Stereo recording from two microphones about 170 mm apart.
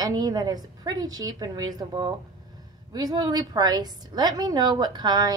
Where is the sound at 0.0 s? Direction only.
25° right (ahead or behind).